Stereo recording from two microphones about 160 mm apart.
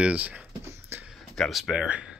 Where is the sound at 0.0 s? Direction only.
10° right (ahead or behind).